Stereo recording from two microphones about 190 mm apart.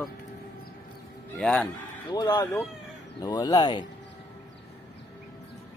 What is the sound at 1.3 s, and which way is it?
Speech, 5° left (ahead or behind).